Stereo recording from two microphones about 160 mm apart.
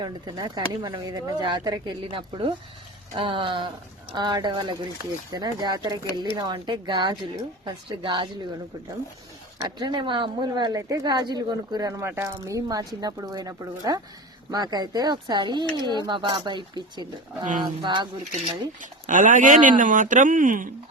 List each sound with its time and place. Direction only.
0.0 s speech: 25° right (ahead or behind)
9.6 s speech: 30° right (ahead or behind)
18.8 s speech: 55° right (ahead or behind)